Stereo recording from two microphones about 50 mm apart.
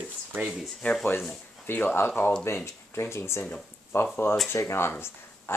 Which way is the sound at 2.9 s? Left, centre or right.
Left.